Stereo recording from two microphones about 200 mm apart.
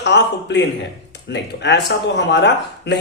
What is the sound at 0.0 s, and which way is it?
Speech, 60° left (ahead or behind).